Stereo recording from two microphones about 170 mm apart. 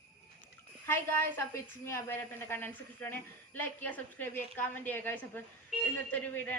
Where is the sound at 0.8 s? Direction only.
15° left (ahead or behind).